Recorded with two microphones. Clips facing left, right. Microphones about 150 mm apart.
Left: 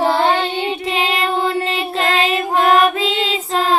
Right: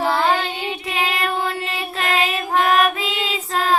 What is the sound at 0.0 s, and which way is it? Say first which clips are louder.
Child singing: left 3 dB; 30° left (ahead or behind).